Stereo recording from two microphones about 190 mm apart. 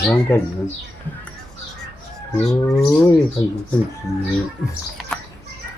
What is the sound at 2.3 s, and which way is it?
Speech, centre (ahead or behind).